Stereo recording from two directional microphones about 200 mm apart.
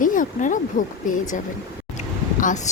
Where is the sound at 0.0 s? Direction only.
40° left (ahead or behind).